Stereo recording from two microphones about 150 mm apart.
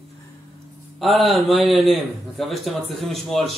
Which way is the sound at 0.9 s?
Centre (ahead or behind).